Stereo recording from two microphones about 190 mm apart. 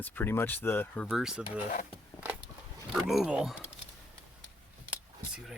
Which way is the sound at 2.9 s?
Centre (ahead or behind).